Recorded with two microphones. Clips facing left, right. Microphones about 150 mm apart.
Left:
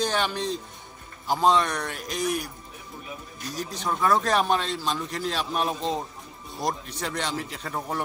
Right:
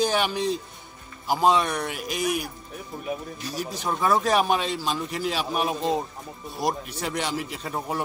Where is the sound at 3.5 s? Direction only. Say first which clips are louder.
Even; 5° right (ahead or behind).